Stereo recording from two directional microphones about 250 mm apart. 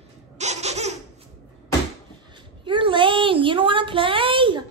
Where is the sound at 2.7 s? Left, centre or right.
Centre.